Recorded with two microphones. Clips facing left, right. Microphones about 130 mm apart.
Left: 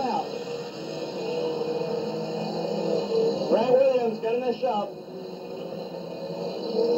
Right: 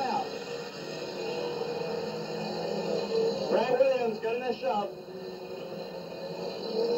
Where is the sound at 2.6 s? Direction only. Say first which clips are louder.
Left 5 dB; 20° left (ahead or behind).